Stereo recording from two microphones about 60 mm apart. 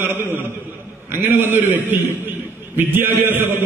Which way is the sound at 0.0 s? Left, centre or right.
Right.